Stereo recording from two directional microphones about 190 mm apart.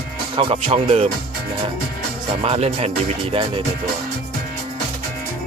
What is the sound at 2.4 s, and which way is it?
Speech, 30° right (ahead or behind).